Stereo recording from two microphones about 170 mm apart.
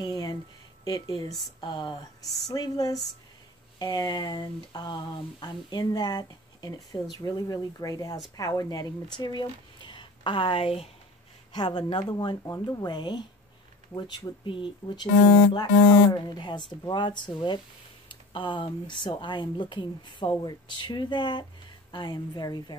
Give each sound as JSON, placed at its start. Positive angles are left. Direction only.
{"t": 0.0, "sound": "a sound", "side_deg": 25}
{"t": 0.8, "sound": "speech", "side_deg": 25}
{"t": 16.1, "sound": "speech", "side_deg": 25}